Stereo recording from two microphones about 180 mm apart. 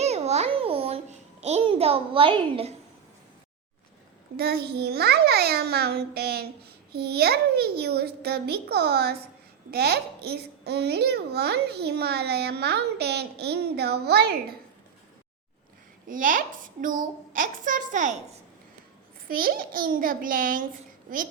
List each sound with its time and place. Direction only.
0.0 s babbling: 35° right (ahead or behind)
4.4 s a child's voice: 60° right (ahead or behind)
16.0 s a child's voice: 50° right (ahead or behind)
19.3 s a child's voice: 55° right (ahead or behind)